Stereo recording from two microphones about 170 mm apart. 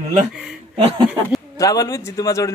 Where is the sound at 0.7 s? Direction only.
35° right (ahead or behind).